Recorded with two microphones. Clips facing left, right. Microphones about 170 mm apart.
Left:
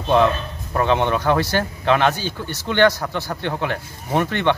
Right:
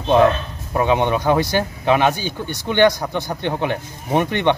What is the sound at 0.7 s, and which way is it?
Speech, 15° right (ahead or behind).